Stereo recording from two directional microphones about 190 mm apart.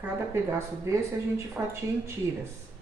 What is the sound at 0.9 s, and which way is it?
Speech, 15° right (ahead or behind).